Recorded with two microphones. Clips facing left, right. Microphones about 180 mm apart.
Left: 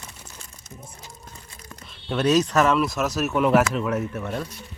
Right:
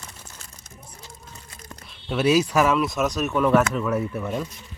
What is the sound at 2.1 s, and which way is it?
Speech, 5° right (ahead or behind).